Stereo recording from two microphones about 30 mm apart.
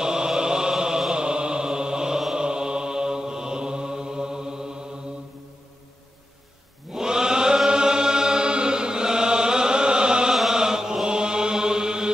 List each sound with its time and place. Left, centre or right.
0.0 s music: right
1.1 s mantra: right
6.9 s chant: right